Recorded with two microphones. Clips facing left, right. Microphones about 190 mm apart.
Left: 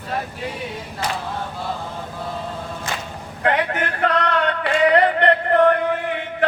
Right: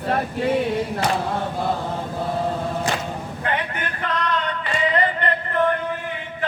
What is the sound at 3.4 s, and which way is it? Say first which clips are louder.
Male singing: left 7 dB; 70° left (ahead or behind).